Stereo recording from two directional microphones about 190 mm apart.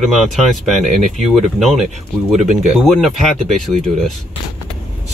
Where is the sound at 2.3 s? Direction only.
40° right (ahead or behind).